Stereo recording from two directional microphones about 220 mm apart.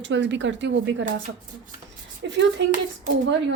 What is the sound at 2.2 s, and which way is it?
Speech, 55° right (ahead or behind).